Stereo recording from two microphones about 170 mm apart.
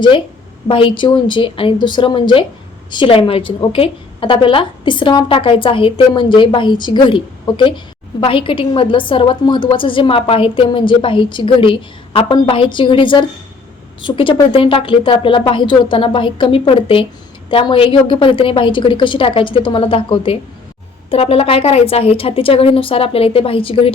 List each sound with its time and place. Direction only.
0.7 s a woman's voice: 30° left (ahead or behind)